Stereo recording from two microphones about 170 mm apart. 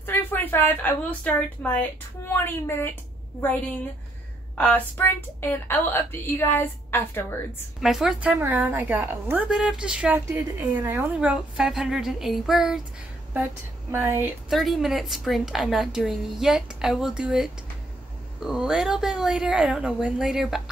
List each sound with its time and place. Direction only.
0.0 s speech: 10° left (ahead or behind)
4.6 s a woman's voice: 10° left (ahead or behind)
7.8 s a woman's voice: centre (ahead or behind)
13.9 s speech: 10° right (ahead or behind)
14.5 s a woman's voice: centre (ahead or behind)